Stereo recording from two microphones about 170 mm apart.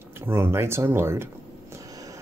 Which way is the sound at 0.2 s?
15° right (ahead or behind).